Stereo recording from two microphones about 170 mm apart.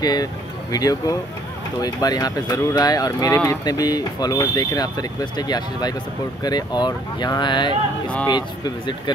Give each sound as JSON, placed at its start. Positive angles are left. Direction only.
{"t": 0.0, "sound": "speech", "side_deg": 25}